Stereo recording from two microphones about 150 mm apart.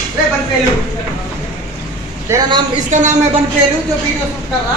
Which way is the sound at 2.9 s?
55° right (ahead or behind).